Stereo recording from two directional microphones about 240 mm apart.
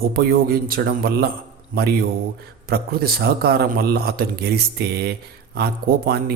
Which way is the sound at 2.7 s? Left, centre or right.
Right.